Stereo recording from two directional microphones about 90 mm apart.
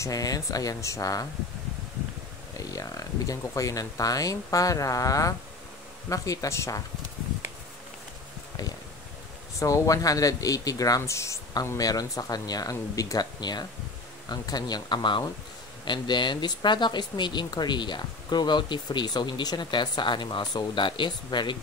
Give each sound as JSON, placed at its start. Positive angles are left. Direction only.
{"t": 0.0, "sound": "speech", "side_deg": 45}
{"t": 2.5, "sound": "speech", "side_deg": 40}
{"t": 9.6, "sound": "speech", "side_deg": 35}